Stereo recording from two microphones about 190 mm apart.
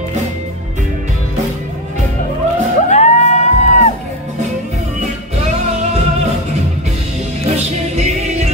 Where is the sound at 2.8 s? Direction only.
35° left (ahead or behind).